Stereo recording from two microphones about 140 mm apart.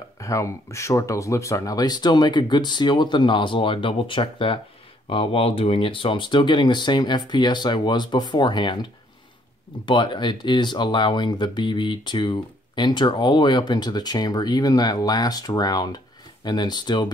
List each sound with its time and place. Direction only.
0.2 s speech: 20° left (ahead or behind)
9.8 s speech: 35° left (ahead or behind)